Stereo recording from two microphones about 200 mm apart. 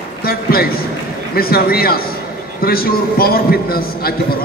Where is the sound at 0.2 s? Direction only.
50° left (ahead or behind).